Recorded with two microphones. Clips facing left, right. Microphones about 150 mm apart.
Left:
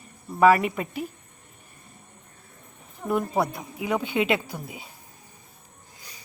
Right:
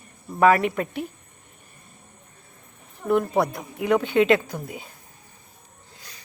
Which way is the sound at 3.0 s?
10° left (ahead or behind).